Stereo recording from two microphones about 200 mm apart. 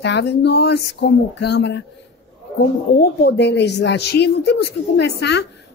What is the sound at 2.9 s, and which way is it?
A woman's voice, 55° left (ahead or behind).